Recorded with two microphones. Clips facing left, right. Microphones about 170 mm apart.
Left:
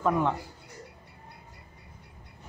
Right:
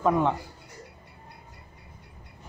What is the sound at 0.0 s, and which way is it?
Speech, 15° right (ahead or behind).